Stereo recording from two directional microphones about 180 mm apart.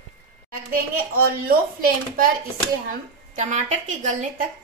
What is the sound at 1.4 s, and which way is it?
Speech, 55° right (ahead or behind).